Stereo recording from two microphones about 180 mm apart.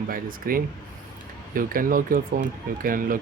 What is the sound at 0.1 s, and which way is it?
Speech, 50° right (ahead or behind).